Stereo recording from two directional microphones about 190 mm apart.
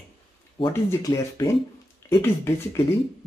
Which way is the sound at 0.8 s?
15° left (ahead or behind).